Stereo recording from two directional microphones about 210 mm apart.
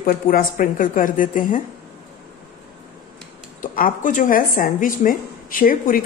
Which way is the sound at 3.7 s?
40° left (ahead or behind).